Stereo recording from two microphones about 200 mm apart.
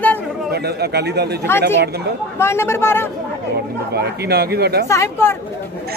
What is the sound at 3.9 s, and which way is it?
Speech, 55° right (ahead or behind).